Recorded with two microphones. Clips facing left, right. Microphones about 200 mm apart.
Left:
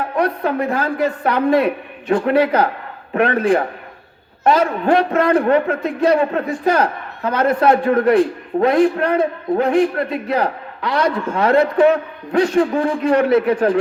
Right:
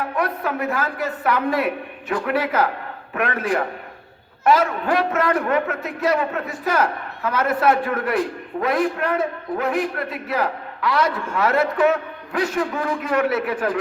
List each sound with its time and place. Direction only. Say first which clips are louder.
0.2 s a man's voice: left 6 dB; 30° left (ahead or behind)